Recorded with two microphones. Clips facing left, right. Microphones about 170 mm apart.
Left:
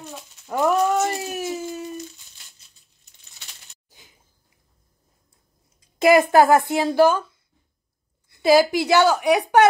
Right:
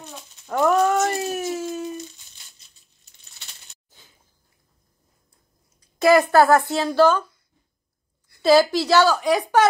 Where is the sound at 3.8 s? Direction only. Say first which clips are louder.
Left 1 dB; 15° left (ahead or behind).